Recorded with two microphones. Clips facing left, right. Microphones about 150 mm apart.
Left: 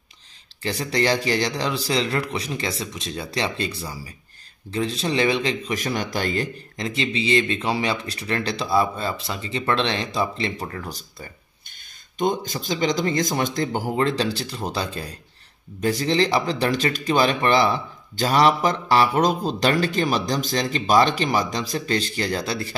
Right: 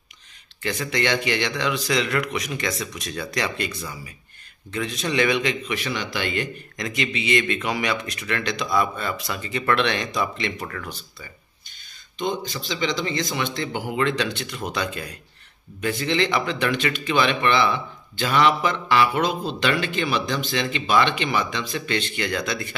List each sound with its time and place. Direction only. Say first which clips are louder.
0.6 s speech: left 2 dB; 30° left (ahead or behind)